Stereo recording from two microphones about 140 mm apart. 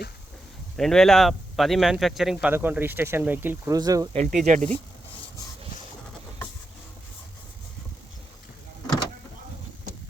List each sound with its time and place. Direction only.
0.8 s speech: 5° left (ahead or behind); by 3.6 s 15° right (ahead or behind)
3.7 s speech: 25° right (ahead or behind)
4.3 s speech: 65° right (ahead or behind)